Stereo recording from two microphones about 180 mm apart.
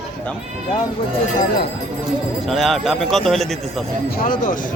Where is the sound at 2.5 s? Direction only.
Centre (ahead or behind).